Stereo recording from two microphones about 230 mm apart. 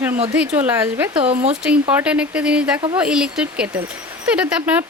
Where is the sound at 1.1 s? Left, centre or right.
Right.